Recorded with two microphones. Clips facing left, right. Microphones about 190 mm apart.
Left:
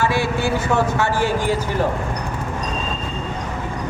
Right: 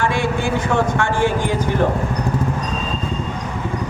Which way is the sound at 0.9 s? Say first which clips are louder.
Right 1 dB; 5° left (ahead or behind).